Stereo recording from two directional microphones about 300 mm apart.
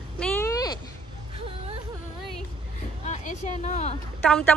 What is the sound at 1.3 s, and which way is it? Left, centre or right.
Whimper, centre.